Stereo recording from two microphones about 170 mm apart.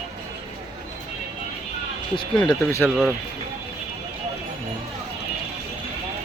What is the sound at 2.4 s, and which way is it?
Speech, 15° left (ahead or behind).